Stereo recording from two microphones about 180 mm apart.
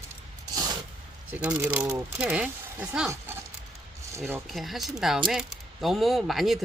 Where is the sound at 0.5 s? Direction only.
20° right (ahead or behind).